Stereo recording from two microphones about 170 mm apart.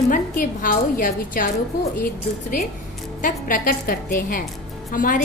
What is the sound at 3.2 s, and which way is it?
A woman's voice, 55° left (ahead or behind).